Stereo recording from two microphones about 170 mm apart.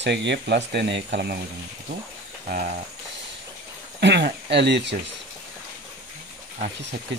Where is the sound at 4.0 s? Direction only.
85° right.